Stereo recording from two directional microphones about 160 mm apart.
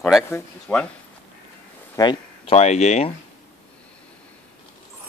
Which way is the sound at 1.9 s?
25° left (ahead or behind).